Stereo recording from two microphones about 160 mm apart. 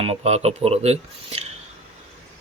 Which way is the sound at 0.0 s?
40° right (ahead or behind).